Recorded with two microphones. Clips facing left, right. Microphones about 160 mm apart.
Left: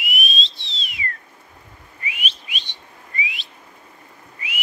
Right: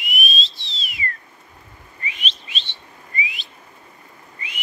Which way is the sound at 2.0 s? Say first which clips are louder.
Even; 10° left (ahead or behind).